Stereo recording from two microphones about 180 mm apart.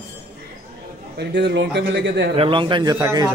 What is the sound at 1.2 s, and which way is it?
A man's voice, 70° right (ahead or behind).